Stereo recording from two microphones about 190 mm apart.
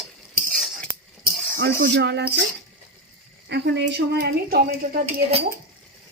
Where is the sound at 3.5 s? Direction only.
65° right (ahead or behind).